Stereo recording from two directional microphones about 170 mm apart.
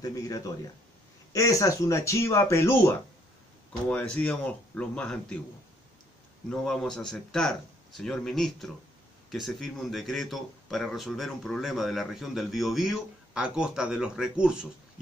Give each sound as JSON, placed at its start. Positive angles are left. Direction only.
{"t": 0.0, "sound": "speech", "side_deg": 20}
{"t": 3.9, "sound": "speech", "side_deg": 10}
{"t": 6.5, "sound": "speech", "side_deg": 5}